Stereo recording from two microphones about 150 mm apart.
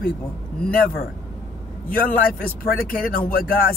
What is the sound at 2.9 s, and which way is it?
Speech, 70° left (ahead or behind).